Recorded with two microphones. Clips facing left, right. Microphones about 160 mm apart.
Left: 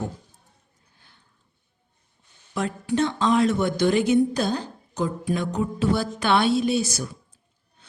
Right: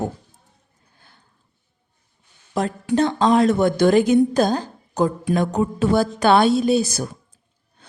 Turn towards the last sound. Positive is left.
turn(degrees=-40)  # may be behind; listen again after turning